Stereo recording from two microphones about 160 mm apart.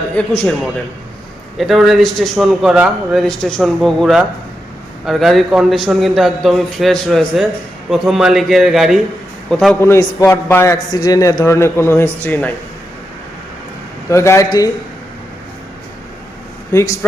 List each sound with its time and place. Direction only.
0.2 s a man's voice: 10° left (ahead or behind)
1.5 s a man's voice: centre (ahead or behind)
9.8 s a man's voice: 20° left (ahead or behind)
14.1 s a man's voice: 20° left (ahead or behind)
16.7 s a man's voice: 15° left (ahead or behind)